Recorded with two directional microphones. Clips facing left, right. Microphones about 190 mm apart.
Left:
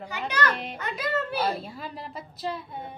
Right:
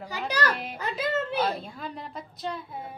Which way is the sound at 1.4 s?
5° left (ahead or behind).